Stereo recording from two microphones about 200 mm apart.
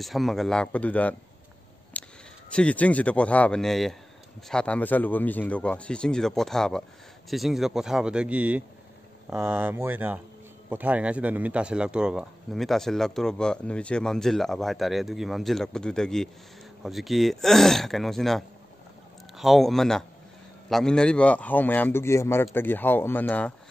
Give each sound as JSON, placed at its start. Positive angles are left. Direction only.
{"t": 0.0, "sound": "speech", "side_deg": 0}
{"t": 2.0, "sound": "a sound", "side_deg": 5}
{"t": 2.5, "sound": "a man's voice", "side_deg": 5}